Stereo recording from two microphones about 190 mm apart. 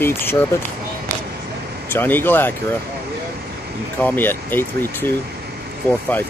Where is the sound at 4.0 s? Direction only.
10° left (ahead or behind).